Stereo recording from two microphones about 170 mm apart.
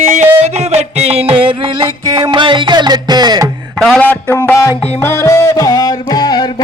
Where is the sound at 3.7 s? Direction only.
5° left (ahead or behind).